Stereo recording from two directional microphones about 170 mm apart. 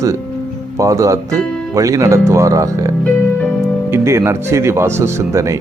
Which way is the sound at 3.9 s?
15° right (ahead or behind).